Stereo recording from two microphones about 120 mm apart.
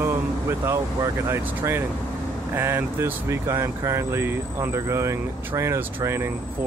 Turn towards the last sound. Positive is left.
turn(degrees=-20)  # may be behind; listen again after turning